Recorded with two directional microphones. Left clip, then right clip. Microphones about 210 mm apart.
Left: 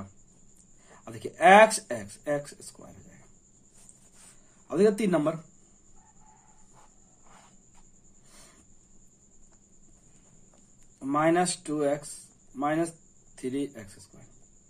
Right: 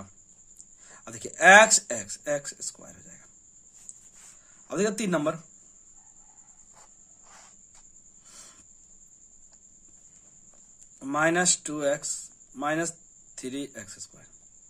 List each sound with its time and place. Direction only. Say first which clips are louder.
0.8 s speech: left 1 dB; 30° right (ahead or behind)
4.6 s speech: left 4 dB; 25° right (ahead or behind)
8.3 s cricket: right 5 dB; 25° right (ahead or behind)
11.0 s speech: even; 30° right (ahead or behind)